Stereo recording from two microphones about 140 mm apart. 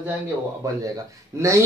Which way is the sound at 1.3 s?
20° right (ahead or behind).